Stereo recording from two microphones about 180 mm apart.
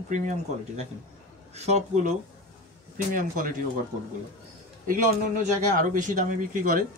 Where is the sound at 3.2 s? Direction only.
50° right (ahead or behind).